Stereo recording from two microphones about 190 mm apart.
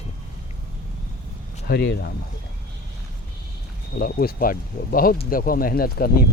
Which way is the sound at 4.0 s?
50° left (ahead or behind).